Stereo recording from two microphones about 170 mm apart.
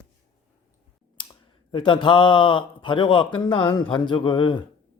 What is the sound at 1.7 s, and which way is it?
A man's voice, 30° left (ahead or behind).